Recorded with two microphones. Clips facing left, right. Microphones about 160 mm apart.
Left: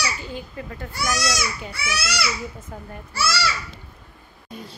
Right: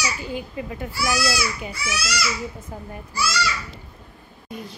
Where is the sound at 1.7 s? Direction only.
65° left (ahead or behind).